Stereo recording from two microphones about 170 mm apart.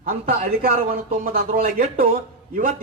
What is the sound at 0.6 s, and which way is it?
A man's voice, 60° right (ahead or behind).